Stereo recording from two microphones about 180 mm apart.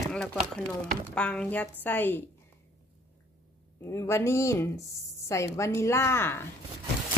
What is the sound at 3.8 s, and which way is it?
Speech, 15° left (ahead or behind).